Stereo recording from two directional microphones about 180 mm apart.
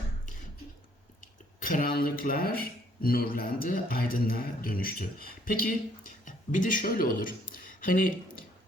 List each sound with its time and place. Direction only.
1.5 s a man's voice: 50° left (ahead or behind)